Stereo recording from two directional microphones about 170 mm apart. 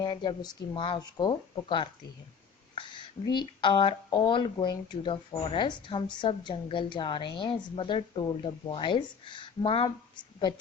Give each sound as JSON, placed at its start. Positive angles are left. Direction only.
{"t": 0.0, "sound": "speech", "side_deg": 25}
{"t": 3.2, "sound": "speech", "side_deg": 25}